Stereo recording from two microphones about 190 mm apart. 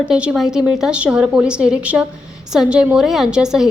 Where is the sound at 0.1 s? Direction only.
5° right (ahead or behind).